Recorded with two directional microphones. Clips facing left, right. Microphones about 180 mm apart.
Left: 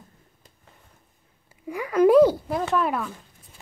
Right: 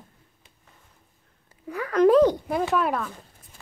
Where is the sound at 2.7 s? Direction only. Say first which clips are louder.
Even; centre (ahead or behind).